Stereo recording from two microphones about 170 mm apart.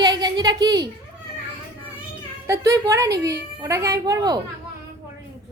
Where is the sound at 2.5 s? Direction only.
20° right (ahead or behind).